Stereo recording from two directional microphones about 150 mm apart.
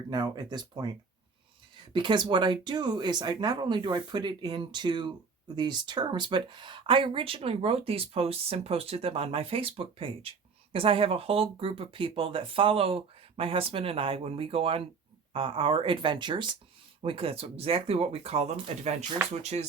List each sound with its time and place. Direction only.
0.1 s speech: 30° right (ahead or behind)
1.9 s speech: 30° right (ahead or behind); by 19.6 s 50° right (ahead or behind)